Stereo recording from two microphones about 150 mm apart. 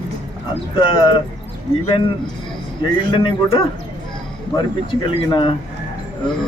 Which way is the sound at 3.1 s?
35° left (ahead or behind).